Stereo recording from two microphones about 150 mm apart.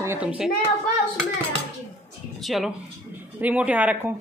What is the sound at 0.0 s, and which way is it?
Speech, 15° right (ahead or behind).